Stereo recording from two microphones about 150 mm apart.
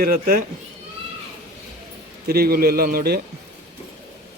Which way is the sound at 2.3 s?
90° right.